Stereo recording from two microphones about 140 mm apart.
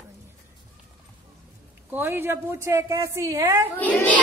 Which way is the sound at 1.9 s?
15° right (ahead or behind).